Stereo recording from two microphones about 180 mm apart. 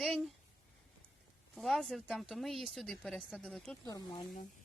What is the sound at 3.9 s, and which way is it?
Speech, 20° left (ahead or behind).